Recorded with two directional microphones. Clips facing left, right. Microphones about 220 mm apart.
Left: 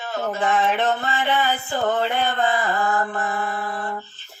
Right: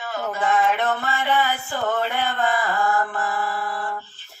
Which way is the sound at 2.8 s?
20° left (ahead or behind).